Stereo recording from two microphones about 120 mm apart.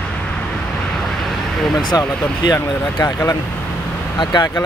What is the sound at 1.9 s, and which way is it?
Speech, 30° left (ahead or behind).